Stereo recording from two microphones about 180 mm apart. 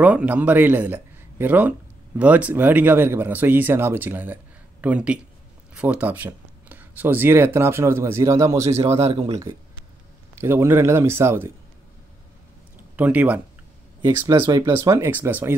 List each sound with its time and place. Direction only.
0.0 s a man's voice: 10° right (ahead or behind)
8.8 s speech: 35° right (ahead or behind)
10.3 s a man's voice: 15° right (ahead or behind)
12.9 s a man's voice: 10° right (ahead or behind)